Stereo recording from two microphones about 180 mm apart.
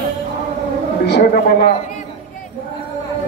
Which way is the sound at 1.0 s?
65° left (ahead or behind).